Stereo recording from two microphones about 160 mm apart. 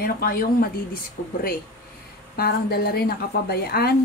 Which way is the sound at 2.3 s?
75° left (ahead or behind).